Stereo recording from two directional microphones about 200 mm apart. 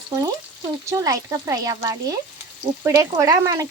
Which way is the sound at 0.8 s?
15° right (ahead or behind).